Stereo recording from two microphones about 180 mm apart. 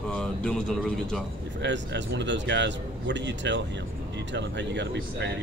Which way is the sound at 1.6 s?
80° right.